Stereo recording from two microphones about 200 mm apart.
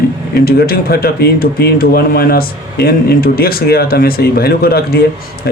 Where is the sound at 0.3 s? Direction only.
50° left (ahead or behind).